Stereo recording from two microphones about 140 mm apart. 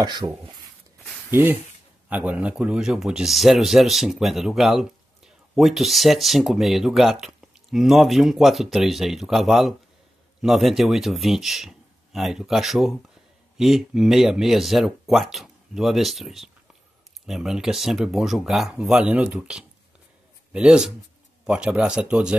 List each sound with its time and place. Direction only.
0.2 s speech: 25° right (ahead or behind); by 22.3 s 5° right (ahead or behind)